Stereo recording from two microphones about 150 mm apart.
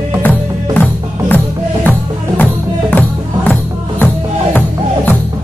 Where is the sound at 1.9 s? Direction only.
10° left (ahead or behind).